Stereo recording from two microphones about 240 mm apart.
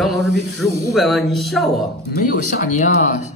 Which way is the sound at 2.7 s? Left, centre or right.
Left.